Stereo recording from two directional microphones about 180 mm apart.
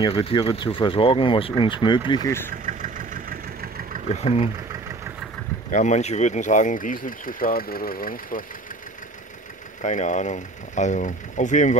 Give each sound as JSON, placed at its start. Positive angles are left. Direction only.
{"t": 0.0, "sound": "speech", "side_deg": 30}
{"t": 2.6, "sound": "vehicle", "side_deg": -45}
{"t": 4.2, "sound": "speech", "side_deg": 35}
{"t": 5.7, "sound": "speech", "side_deg": 40}
{"t": 9.8, "sound": "speech", "side_deg": 45}